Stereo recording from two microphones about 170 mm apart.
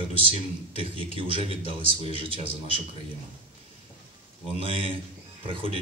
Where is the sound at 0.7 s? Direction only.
30° right (ahead or behind).